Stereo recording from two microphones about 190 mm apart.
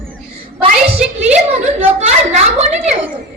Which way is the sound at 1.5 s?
35° right (ahead or behind).